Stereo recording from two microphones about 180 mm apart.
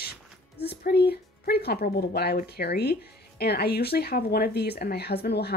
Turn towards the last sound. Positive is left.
turn(degrees=65)  # may be behind; listen again after turning